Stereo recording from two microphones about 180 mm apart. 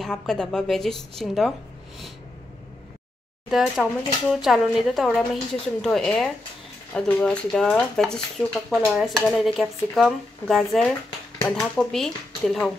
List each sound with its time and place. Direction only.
0.0 s speech: 5° left (ahead or behind)
3.4 s speech: centre (ahead or behind)